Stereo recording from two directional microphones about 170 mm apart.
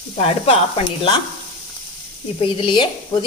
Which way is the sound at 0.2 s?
35° left (ahead or behind).